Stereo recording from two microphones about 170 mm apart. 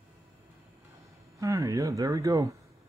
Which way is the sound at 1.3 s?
20° right (ahead or behind).